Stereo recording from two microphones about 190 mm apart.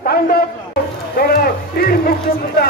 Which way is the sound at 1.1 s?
55° left (ahead or behind).